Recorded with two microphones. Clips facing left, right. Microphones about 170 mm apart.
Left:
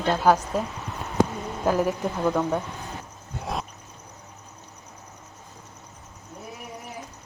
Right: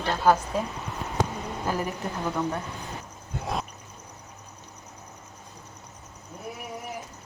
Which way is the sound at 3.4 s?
Centre (ahead or behind).